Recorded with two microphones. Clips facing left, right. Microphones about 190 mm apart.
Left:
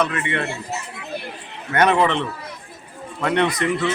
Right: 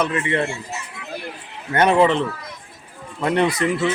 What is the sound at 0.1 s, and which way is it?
Speech, 35° right (ahead or behind).